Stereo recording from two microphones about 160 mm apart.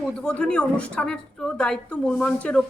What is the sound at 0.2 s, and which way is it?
Speech, 5° left (ahead or behind).